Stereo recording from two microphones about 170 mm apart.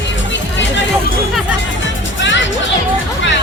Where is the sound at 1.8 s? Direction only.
90° left.